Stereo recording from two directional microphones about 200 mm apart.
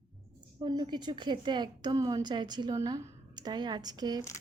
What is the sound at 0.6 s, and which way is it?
A woman's voice, 20° right (ahead or behind).